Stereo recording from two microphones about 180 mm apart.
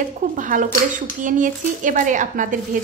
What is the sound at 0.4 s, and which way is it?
Speech, 45° right (ahead or behind).